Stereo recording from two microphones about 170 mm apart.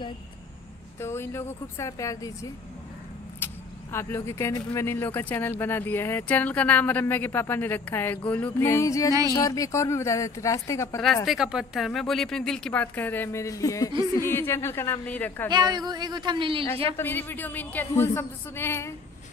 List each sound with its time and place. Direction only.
1.0 s speech: 15° left (ahead or behind)
3.9 s speech: 15° left (ahead or behind)
11.2 s a woman's voice: 5° right (ahead or behind)
15.5 s speech: 25° right (ahead or behind)
16.9 s speech: 10° left (ahead or behind)